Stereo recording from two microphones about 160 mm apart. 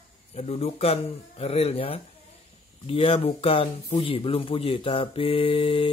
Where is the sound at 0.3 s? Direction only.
40° left (ahead or behind).